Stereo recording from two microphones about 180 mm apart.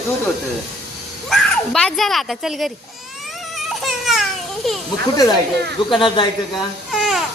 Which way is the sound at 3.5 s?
Centre (ahead or behind).